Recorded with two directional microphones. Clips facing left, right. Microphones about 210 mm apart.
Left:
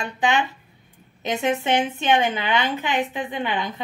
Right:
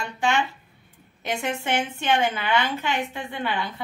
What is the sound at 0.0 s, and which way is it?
A woman's voice, 20° left (ahead or behind).